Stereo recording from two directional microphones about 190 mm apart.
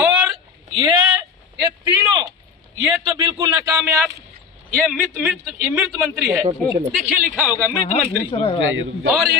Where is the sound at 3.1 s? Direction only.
30° right (ahead or behind).